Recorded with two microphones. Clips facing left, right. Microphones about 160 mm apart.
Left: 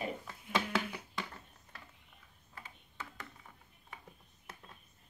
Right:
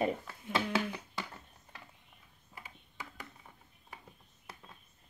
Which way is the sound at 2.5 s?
10° right (ahead or behind).